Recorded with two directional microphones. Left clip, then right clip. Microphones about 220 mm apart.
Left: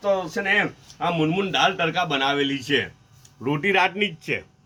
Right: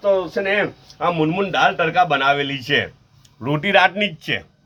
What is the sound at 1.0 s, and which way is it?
Speech, 20° right (ahead or behind).